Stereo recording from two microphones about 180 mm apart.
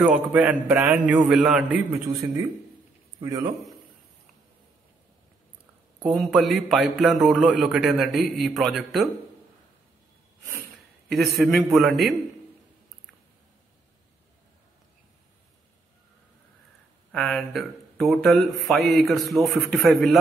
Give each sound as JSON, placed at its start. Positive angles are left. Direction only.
{"t": 0.0, "sound": "a man's voice", "side_deg": -10}
{"t": 3.2, "sound": "a man's voice", "side_deg": -20}
{"t": 6.0, "sound": "a man's voice", "side_deg": 0}
{"t": 11.1, "sound": "a man's voice", "side_deg": 0}
{"t": 17.1, "sound": "a man's voice", "side_deg": 0}